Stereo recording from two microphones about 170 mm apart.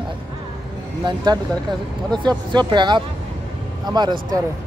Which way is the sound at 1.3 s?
25° right (ahead or behind).